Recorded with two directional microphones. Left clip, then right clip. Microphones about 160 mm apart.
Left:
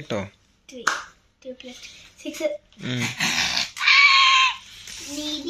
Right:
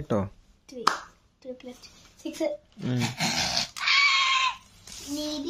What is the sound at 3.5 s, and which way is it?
Pig, 90° right.